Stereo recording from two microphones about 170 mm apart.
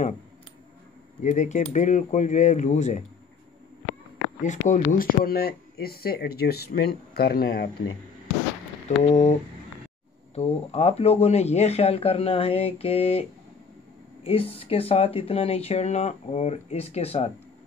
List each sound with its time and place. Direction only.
1.2 s speech: 45° left (ahead or behind)
4.4 s speech: 45° left (ahead or behind); by 7.7 s 65° left (ahead or behind)
9.1 s speech: 45° left (ahead or behind)